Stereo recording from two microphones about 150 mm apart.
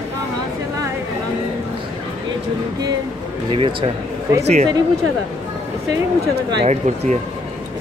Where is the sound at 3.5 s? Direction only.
35° right (ahead or behind).